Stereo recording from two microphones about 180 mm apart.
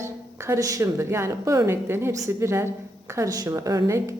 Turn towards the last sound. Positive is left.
turn(degrees=-15)  # may be behind; listen again after turning